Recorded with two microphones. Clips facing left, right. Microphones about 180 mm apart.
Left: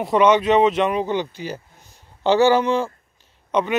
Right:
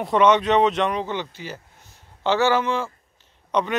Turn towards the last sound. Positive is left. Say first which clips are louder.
# left 2 dB
turn(degrees=5)  # may be behind; listen again after turning